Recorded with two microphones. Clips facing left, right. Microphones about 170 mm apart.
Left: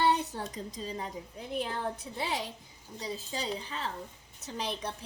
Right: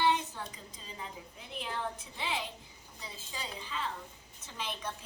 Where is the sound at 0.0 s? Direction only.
35° left (ahead or behind).